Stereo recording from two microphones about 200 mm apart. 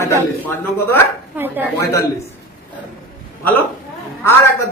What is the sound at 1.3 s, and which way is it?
Speech, 10° right (ahead or behind).